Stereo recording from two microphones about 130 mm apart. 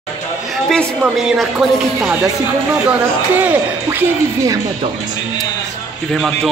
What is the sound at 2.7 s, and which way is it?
Speech, 10° right (ahead or behind).